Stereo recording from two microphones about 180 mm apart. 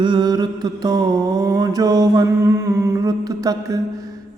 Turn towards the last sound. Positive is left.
turn(degrees=-20)  # may be behind; listen again after turning